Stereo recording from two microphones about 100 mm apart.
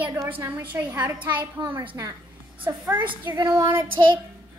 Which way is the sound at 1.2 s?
15° right (ahead or behind).